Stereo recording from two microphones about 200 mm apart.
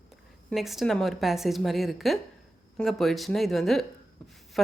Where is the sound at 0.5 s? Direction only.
Centre (ahead or behind).